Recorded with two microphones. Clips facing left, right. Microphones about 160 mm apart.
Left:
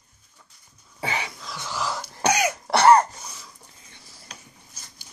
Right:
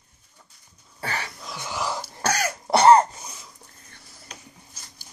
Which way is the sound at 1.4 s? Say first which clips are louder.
Even; 15° right (ahead or behind).